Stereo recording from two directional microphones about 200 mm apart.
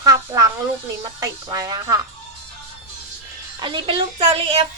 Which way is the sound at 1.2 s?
20° right (ahead or behind).